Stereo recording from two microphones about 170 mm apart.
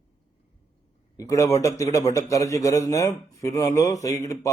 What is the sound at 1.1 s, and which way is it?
A man's voice, 20° left (ahead or behind).